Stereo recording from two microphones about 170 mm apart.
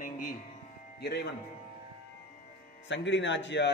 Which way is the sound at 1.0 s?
75° left (ahead or behind).